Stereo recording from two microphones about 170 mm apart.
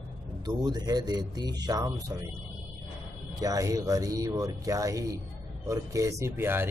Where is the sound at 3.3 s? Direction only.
20° right (ahead or behind).